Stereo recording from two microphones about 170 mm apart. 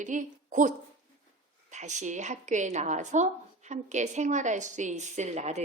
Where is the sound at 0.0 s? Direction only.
50° right (ahead or behind).